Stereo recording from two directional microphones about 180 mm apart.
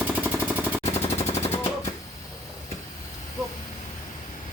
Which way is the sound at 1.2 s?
35° left (ahead or behind).